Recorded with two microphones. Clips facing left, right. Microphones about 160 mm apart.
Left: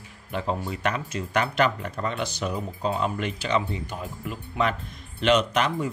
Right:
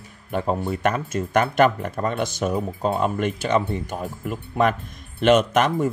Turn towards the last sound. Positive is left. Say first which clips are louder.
# right 5 dB
turn(degrees=-50)  # may be behind; listen again after turning